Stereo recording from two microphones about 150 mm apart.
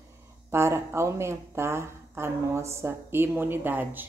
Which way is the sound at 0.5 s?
15° right (ahead or behind).